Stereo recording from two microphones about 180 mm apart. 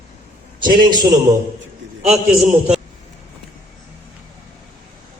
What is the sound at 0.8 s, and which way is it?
Speech, 25° right (ahead or behind).